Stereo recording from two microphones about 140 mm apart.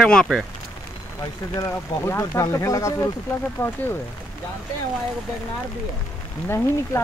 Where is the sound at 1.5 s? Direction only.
20° left (ahead or behind).